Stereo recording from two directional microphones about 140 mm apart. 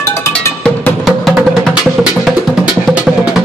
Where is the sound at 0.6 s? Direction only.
5° left (ahead or behind).